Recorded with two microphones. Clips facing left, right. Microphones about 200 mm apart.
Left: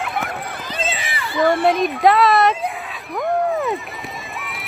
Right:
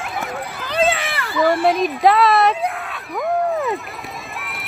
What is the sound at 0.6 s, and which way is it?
Run, 60° right (ahead or behind).